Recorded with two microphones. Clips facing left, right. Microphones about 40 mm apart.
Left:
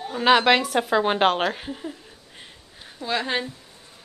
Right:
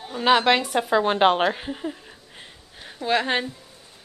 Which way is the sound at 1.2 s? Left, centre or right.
Centre.